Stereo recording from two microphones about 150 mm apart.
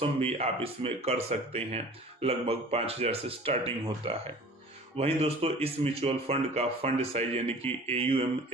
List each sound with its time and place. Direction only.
0.0 s speech: 40° right (ahead or behind)